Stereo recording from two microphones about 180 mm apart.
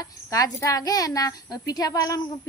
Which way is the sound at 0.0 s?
20° left (ahead or behind).